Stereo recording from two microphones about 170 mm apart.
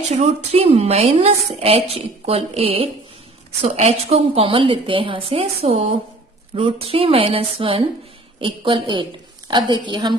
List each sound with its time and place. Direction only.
0.1 s a woman's voice: 40° right (ahead or behind)